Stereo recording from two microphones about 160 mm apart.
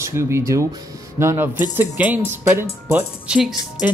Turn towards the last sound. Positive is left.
turn(degrees=-10)  # may be behind; listen again after turning